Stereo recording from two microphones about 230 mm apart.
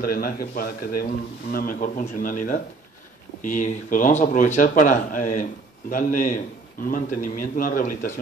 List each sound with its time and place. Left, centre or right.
0.0 s speech: left